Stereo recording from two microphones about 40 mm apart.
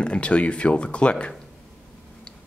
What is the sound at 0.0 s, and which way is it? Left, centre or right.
Speech, left.